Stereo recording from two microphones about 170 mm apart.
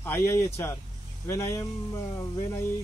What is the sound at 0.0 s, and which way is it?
Speech, 15° left (ahead or behind).